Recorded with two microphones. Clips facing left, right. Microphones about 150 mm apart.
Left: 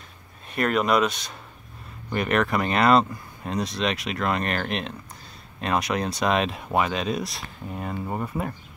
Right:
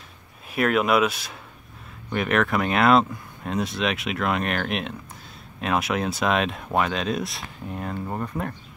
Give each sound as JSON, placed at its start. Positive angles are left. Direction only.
{"t": 0.5, "sound": "speech", "side_deg": -5}